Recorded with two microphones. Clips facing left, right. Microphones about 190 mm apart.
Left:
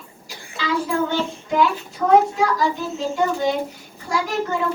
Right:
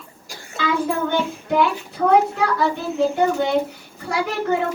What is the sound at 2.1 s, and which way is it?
A child's voice, 60° right (ahead or behind).